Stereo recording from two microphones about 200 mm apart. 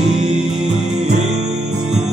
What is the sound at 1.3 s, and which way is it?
Music, 35° right (ahead or behind).